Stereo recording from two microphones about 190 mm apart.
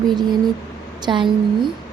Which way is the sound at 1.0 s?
25° right (ahead or behind).